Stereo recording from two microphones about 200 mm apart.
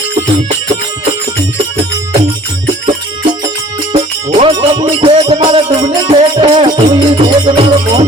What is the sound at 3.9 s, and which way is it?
Music, 25° right (ahead or behind).